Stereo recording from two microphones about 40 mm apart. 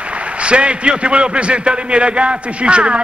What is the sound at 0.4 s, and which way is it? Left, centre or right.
A man's voice, right.